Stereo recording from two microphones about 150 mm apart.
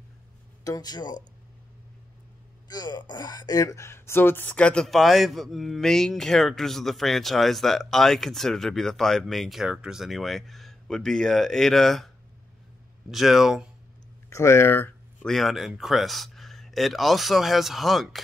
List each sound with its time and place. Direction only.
0.7 s speech: 25° left (ahead or behind)
2.7 s speech: 30° left (ahead or behind); by 12.1 s centre (ahead or behind)
13.1 s speech: centre (ahead or behind)
14.3 s speech: 15° left (ahead or behind)
15.2 s speech: centre (ahead or behind)